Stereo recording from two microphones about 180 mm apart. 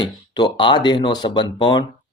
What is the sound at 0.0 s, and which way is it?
Speech, 25° left (ahead or behind).